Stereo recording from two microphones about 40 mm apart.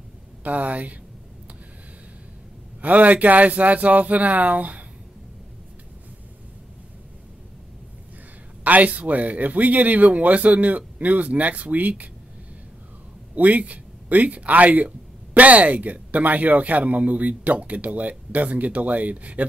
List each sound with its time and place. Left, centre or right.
0.4 s speech: right
2.8 s speech: right
8.6 s speech: right
13.3 s speech: right